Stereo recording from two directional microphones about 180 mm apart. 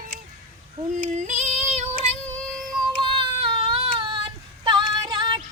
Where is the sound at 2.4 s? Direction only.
5° left (ahead or behind).